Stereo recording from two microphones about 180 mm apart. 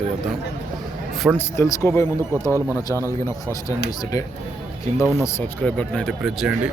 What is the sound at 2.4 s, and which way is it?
Speech, 15° right (ahead or behind).